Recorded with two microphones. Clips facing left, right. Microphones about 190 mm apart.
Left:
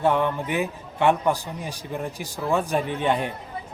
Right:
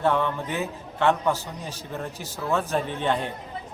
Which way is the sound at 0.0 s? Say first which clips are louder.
Left 2 dB; 15° left (ahead or behind).